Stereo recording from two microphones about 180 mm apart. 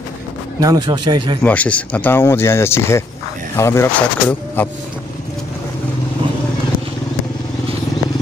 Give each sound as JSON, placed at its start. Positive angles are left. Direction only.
{"t": 0.6, "sound": "speech", "side_deg": -20}
{"t": 1.4, "sound": "speech", "side_deg": 10}